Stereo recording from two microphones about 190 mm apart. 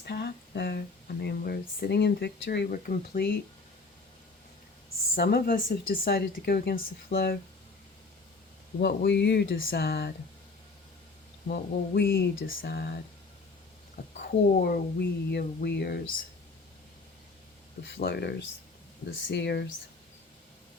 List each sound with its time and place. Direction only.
0.0 s a sound: 55° left (ahead or behind)
1.2 s speech: 55° left (ahead or behind)
5.1 s speech: 55° left (ahead or behind)
8.8 s speech: 55° left (ahead or behind)
9.6 s speech: 55° left (ahead or behind)
11.4 s speech: 55° left (ahead or behind)
14.1 s a sound: 40° left (ahead or behind)
14.6 s speech: 55° left (ahead or behind)
17.8 s speech: 70° left (ahead or behind)